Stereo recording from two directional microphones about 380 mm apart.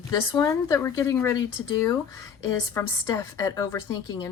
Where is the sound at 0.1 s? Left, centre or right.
Centre.